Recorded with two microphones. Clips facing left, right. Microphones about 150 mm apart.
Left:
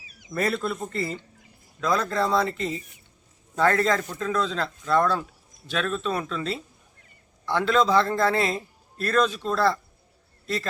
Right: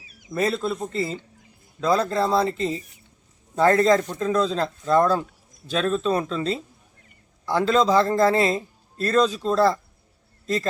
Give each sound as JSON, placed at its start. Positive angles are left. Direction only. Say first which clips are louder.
{"t": 0.3, "sound": "a man's voice", "louder": "right 2 dB", "side_deg": -25}